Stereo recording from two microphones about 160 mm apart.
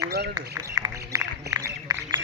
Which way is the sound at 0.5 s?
20° right (ahead or behind).